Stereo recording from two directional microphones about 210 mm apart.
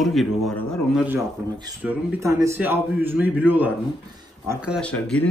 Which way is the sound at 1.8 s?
10° right (ahead or behind).